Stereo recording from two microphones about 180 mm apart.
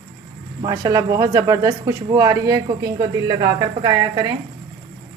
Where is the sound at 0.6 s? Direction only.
20° right (ahead or behind).